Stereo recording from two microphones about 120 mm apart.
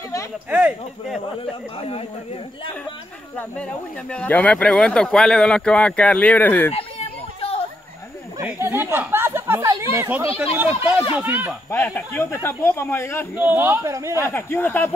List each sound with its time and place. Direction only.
0.5 s speech: 15° right (ahead or behind)
1.8 s speech: 55° left (ahead or behind)
4.1 s speech: 10° left (ahead or behind)
8.5 s speech: 20° right (ahead or behind)
11.7 s speech: 15° left (ahead or behind)
13.4 s speech: 15° right (ahead or behind)
14.2 s speech: 20° left (ahead or behind)